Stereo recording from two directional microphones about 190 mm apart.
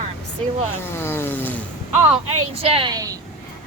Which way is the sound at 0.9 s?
10° left (ahead or behind).